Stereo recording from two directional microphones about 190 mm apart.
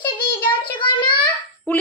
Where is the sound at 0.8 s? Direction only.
25° left (ahead or behind).